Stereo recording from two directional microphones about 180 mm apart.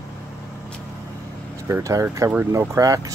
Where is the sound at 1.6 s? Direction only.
15° right (ahead or behind).